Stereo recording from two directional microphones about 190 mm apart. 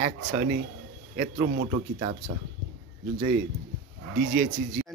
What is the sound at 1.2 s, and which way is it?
Speech, 45° right (ahead or behind).